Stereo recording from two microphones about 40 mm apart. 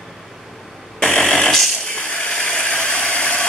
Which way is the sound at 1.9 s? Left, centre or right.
Left.